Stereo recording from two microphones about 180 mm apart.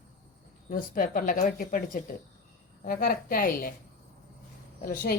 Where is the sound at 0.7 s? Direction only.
50° left (ahead or behind).